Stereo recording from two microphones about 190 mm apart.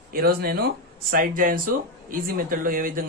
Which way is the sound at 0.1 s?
50° right (ahead or behind).